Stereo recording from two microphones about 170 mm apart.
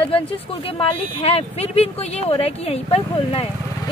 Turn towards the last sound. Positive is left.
turn(degrees=35)  # may be behind; listen again after turning